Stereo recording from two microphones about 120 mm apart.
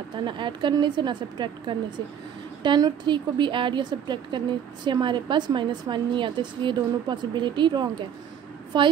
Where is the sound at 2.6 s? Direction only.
40° right (ahead or behind).